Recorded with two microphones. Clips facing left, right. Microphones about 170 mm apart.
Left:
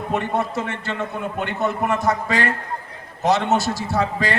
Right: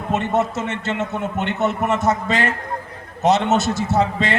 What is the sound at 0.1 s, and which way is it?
A man's voice, 20° right (ahead or behind).